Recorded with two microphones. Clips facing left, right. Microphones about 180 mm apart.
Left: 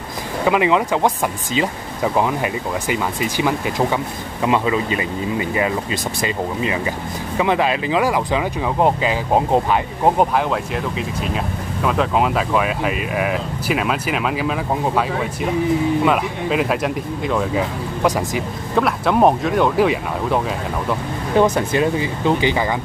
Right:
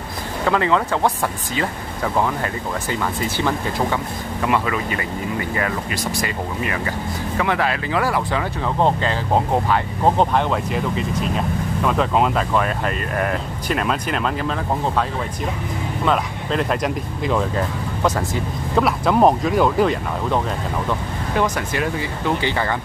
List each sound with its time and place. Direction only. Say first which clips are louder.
0.5 s speech: left 2 dB; 15° left (ahead or behind)
6.2 s speech: left 3 dB; 20° left (ahead or behind)
16.1 s speech: left 2 dB; 5° left (ahead or behind)
18.8 s speech: even; centre (ahead or behind)
21.4 s speech: left 6 dB; 25° left (ahead or behind)